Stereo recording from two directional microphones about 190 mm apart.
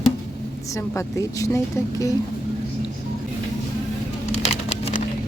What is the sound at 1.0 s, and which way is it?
Speech, 15° left (ahead or behind).